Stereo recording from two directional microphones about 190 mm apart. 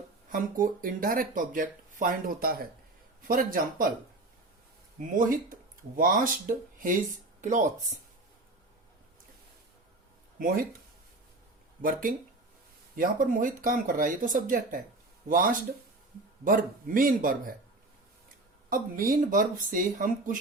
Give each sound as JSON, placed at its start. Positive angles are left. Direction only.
{"t": 0.3, "sound": "speech", "side_deg": -45}
{"t": 4.9, "sound": "speech", "side_deg": -45}
{"t": 10.3, "sound": "speech", "side_deg": -50}
{"t": 11.8, "sound": "speech", "side_deg": -50}
{"t": 19.1, "sound": "speech", "side_deg": -45}